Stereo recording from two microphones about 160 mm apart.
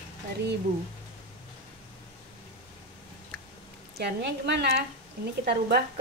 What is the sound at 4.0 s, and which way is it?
Speech, 90° right.